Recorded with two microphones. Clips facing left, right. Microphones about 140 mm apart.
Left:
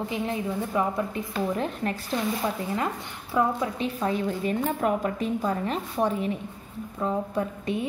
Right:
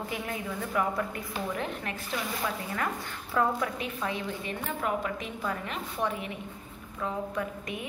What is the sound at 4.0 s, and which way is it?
A woman's voice, 40° left (ahead or behind).